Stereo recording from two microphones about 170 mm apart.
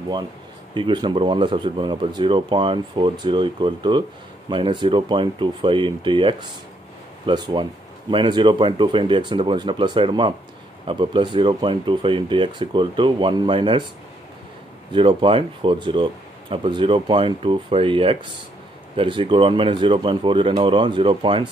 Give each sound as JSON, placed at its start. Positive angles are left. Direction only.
{"t": 0.7, "sound": "speech", "side_deg": -30}
{"t": 14.9, "sound": "speech", "side_deg": -30}